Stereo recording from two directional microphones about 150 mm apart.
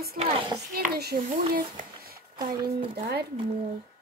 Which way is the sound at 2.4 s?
35° right (ahead or behind).